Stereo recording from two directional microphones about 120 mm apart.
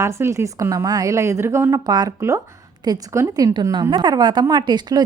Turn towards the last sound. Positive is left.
turn(degrees=-35)  # may be behind; listen again after turning